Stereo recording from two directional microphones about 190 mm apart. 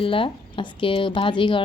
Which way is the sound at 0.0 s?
25° left (ahead or behind).